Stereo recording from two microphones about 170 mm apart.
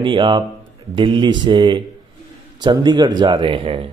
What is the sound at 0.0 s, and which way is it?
Speech, 30° right (ahead or behind).